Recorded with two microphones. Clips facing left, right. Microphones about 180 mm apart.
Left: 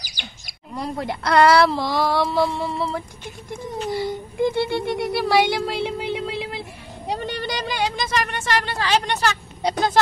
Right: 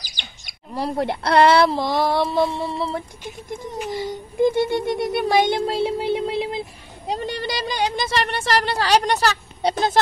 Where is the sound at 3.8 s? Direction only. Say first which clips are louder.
Left 3 dB; 15° right (ahead or behind).